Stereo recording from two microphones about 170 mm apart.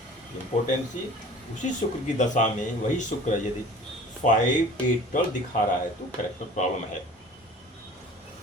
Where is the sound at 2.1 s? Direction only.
45° left (ahead or behind).